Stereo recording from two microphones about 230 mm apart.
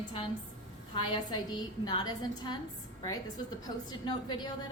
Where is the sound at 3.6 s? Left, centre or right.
Centre.